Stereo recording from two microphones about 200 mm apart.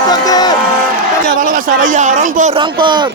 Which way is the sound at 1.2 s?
40° right (ahead or behind).